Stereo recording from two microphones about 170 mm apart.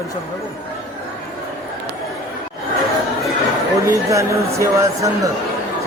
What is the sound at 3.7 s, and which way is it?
Speech, 15° right (ahead or behind).